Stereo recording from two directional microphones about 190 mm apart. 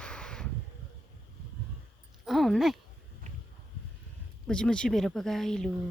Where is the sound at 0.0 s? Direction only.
5° left (ahead or behind).